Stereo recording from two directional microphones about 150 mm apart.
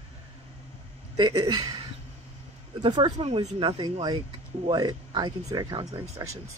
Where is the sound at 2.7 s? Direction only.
30° right (ahead or behind).